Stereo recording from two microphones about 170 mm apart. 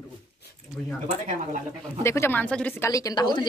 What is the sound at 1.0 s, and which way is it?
Speech, 45° right (ahead or behind).